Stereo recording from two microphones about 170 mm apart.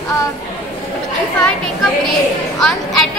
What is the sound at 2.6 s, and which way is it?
Speech, centre (ahead or behind).